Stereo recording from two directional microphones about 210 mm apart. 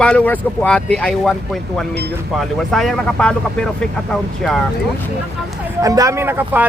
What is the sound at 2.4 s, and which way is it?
Speech, centre (ahead or behind).